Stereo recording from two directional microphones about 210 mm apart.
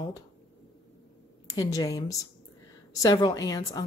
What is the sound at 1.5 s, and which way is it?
A woman's voice, 15° left (ahead or behind).